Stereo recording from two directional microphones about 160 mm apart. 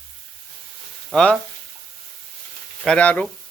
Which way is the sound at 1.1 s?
5° left (ahead or behind).